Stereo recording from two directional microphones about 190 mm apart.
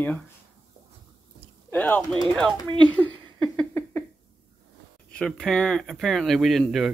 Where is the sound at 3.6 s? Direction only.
10° left (ahead or behind).